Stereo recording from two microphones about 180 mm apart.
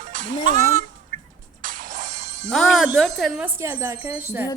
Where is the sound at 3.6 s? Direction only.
15° right (ahead or behind).